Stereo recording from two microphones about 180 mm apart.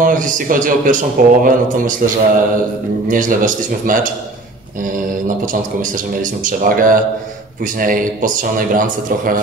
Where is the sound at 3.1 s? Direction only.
50° right (ahead or behind).